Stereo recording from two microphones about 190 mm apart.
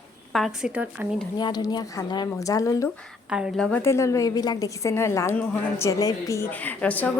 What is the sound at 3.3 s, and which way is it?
A woman's voice, 5° right (ahead or behind).